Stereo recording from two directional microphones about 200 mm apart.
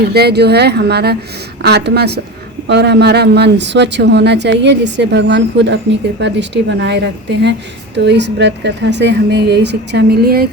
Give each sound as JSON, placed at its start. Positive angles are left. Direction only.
{"t": 0.0, "sound": "speech", "side_deg": -55}